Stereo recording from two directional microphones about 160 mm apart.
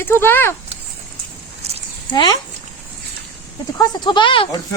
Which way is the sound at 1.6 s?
40° right (ahead or behind).